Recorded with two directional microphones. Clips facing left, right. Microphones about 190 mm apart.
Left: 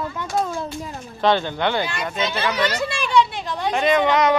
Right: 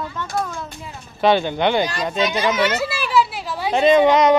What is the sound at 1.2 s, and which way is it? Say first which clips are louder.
Speech: right 3 dB; 15° right (ahead or behind).